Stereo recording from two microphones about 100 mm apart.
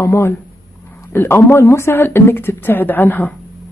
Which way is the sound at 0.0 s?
25° left (ahead or behind).